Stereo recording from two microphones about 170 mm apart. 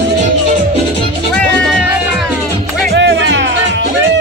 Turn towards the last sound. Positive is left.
turn(degrees=-90)